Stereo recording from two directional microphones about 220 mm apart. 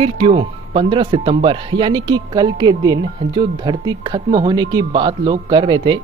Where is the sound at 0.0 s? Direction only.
25° right (ahead or behind).